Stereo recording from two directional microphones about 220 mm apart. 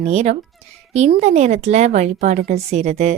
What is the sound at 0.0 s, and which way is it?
A woman's voice, 30° right (ahead or behind).